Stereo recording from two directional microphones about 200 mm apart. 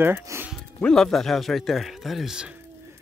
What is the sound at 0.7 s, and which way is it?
A man's voice, 5° left (ahead or behind).